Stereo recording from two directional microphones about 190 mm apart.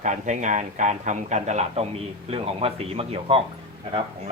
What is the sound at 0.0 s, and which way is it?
Speech, 40° right (ahead or behind).